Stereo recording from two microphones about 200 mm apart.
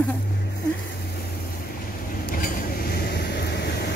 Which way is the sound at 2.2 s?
45° left (ahead or behind).